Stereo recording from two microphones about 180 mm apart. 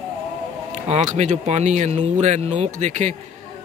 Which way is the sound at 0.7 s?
40° right (ahead or behind).